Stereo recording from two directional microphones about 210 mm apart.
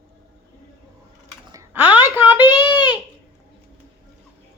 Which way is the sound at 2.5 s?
20° left (ahead or behind).